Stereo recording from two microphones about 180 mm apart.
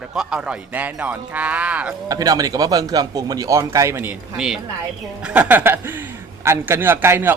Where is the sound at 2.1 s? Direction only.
20° right (ahead or behind).